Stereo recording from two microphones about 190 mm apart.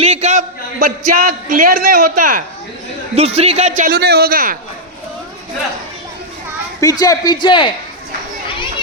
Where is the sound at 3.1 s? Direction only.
30° right (ahead or behind); by 4.6 s 50° right (ahead or behind).